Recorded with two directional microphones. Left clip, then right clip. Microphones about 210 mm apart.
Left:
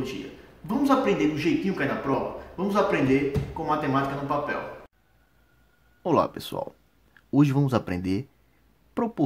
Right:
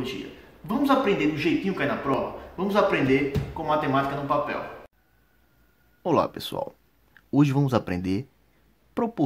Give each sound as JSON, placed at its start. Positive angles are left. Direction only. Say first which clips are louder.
{"t": 0.7, "sound": "a man's voice", "louder": "right 1 dB", "side_deg": 0}
{"t": 6.0, "sound": "a man's voice", "louder": "even", "side_deg": 0}